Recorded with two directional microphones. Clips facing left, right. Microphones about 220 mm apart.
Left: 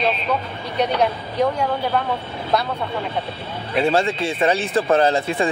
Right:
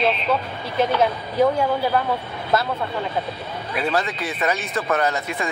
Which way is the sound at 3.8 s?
25° left (ahead or behind).